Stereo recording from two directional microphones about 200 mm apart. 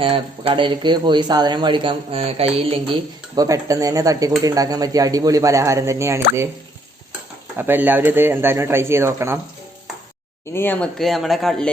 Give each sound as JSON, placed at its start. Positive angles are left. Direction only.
{"t": 0.0, "sound": "speech", "side_deg": -30}
{"t": 7.5, "sound": "speech", "side_deg": -10}
{"t": 10.5, "sound": "speech", "side_deg": 10}